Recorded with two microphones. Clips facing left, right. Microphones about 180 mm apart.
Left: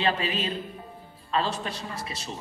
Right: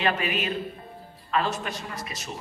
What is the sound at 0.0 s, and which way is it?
A woman's voice, 30° left (ahead or behind).